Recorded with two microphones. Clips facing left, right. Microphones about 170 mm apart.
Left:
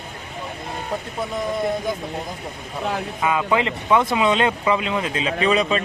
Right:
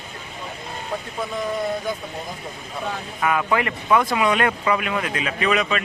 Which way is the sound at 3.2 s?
20° left (ahead or behind).